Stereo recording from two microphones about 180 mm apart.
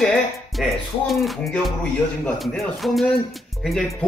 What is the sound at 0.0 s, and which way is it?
Music, centre (ahead or behind).